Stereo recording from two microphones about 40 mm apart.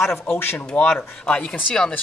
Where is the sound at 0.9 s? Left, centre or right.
Left.